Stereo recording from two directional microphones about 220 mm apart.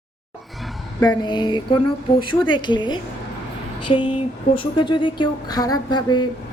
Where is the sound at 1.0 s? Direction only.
20° left (ahead or behind).